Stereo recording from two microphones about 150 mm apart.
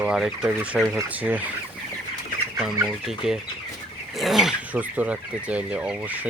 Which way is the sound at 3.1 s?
Centre (ahead or behind).